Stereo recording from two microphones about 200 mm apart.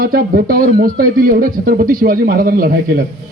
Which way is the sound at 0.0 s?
45° right (ahead or behind).